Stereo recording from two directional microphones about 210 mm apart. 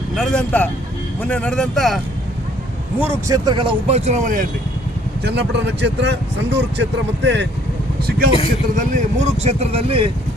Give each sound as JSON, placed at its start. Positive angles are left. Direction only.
{"t": 0.2, "sound": "speech", "side_deg": 5}
{"t": 3.0, "sound": "speech", "side_deg": -15}
{"t": 5.2, "sound": "speech", "side_deg": -55}
{"t": 8.7, "sound": "speech", "side_deg": -35}